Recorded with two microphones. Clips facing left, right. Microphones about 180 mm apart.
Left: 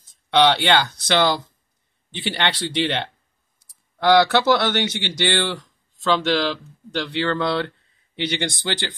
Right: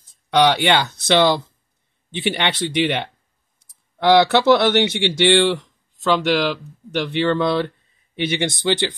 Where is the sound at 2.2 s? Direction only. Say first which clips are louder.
Right 3 dB; 20° right (ahead or behind).